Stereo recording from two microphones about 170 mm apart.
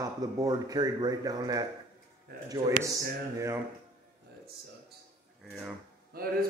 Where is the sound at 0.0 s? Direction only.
20° right (ahead or behind).